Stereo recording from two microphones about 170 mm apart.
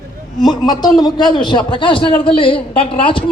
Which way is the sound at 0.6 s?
25° left (ahead or behind).